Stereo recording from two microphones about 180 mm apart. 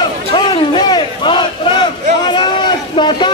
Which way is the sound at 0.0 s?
25° left (ahead or behind).